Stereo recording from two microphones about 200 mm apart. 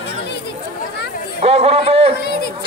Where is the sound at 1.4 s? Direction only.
30° right (ahead or behind).